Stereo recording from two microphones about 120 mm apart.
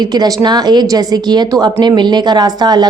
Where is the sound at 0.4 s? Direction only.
35° right (ahead or behind).